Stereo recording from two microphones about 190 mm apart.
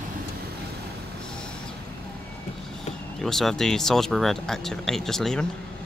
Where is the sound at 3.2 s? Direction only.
Centre (ahead or behind).